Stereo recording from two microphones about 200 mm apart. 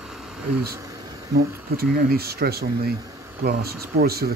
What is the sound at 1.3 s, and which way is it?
Speech, 50° right (ahead or behind).